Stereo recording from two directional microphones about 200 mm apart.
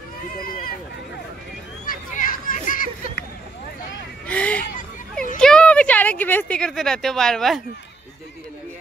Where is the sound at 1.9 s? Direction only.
45° left (ahead or behind).